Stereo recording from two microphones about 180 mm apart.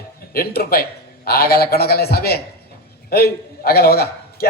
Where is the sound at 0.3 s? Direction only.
60° left (ahead or behind).